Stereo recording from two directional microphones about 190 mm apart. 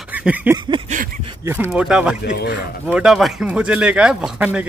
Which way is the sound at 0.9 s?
40° right (ahead or behind).